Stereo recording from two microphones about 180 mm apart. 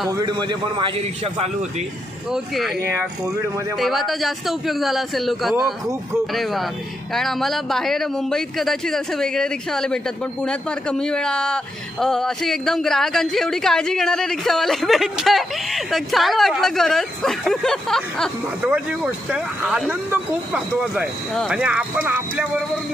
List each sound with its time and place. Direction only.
0.1 s a man's voice: 20° right (ahead or behind)
2.3 s speech: centre (ahead or behind)
3.7 s speech: centre (ahead or behind)
18.7 s speech: 10° right (ahead or behind)